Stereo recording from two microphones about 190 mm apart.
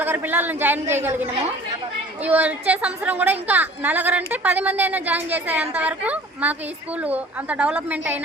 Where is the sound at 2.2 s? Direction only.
10° right (ahead or behind).